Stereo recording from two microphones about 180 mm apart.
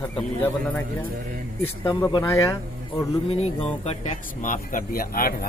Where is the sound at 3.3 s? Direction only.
35° left (ahead or behind).